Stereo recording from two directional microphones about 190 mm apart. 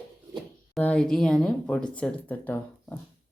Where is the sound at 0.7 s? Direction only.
5° left (ahead or behind).